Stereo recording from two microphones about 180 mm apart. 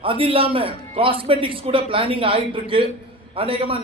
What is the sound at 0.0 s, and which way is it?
A man's voice, 30° right (ahead or behind).